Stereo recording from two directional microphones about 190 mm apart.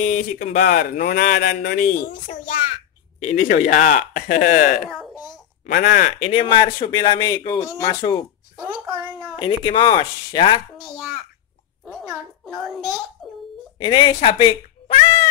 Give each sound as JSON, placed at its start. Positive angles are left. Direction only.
{"t": 0.0, "sound": "speech", "side_deg": 40}
{"t": 2.4, "sound": "a sound", "side_deg": 45}
{"t": 3.2, "sound": "speech", "side_deg": 40}
{"t": 9.4, "sound": "speech", "side_deg": 25}
{"t": 10.8, "sound": "a sound", "side_deg": 0}
{"t": 12.1, "sound": "a child's voice", "side_deg": 0}
{"t": 13.7, "sound": "speech", "side_deg": 25}